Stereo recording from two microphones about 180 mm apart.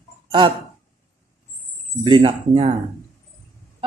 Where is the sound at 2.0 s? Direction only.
30° right (ahead or behind).